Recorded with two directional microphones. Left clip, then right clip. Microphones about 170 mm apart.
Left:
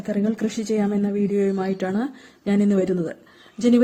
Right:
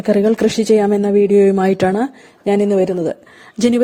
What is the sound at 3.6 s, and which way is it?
Speech, 50° right (ahead or behind).